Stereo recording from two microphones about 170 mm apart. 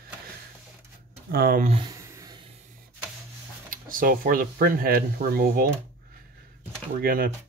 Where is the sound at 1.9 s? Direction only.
20° right (ahead or behind).